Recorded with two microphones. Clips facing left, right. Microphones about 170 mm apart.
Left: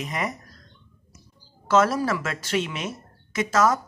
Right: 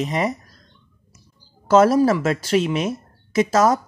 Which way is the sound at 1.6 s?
35° right (ahead or behind).